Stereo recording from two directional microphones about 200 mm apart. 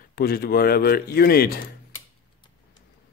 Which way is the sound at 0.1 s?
50° left (ahead or behind).